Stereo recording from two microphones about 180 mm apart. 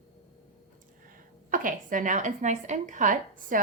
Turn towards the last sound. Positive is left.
turn(degrees=-50)  # may be behind; listen again after turning